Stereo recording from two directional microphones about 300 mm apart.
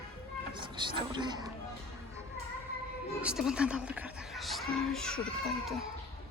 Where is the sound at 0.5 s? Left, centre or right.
Centre.